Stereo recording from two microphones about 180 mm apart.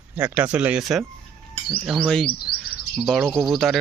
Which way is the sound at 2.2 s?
60° left (ahead or behind).